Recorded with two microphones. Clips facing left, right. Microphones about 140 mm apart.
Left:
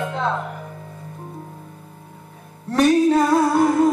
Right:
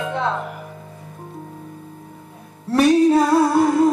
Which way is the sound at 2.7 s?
5° right (ahead or behind).